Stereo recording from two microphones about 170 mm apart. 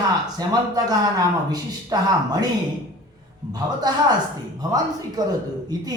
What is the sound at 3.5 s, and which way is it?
Speech, 25° right (ahead or behind).